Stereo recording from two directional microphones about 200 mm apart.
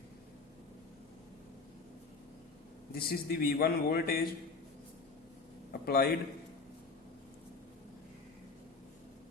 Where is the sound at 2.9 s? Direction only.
50° left (ahead or behind).